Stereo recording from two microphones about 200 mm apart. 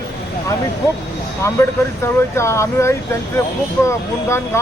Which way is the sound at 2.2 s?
15° left (ahead or behind).